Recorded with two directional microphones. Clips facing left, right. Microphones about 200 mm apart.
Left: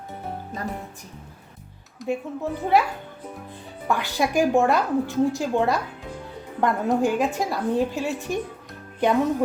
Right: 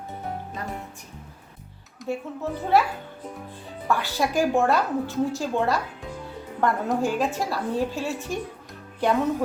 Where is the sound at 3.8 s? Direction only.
15° left (ahead or behind).